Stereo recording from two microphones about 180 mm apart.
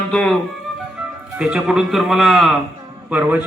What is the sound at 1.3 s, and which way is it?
A man's voice, 5° right (ahead or behind).